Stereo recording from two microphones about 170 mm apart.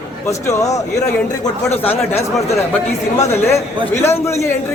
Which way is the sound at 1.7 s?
40° left (ahead or behind).